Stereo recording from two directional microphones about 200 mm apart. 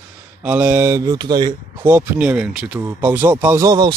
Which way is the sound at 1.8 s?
10° right (ahead or behind).